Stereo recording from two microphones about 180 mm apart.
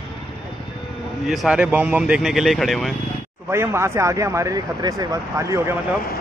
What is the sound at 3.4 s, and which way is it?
Speech, 15° right (ahead or behind).